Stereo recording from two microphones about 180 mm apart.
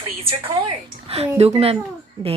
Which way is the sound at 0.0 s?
30° right (ahead or behind).